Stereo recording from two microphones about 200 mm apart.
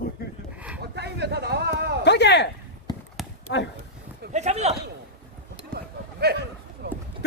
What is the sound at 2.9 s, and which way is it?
Horse, 20° left (ahead or behind).